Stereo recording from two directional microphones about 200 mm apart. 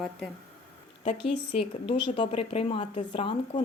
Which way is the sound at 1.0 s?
25° left (ahead or behind).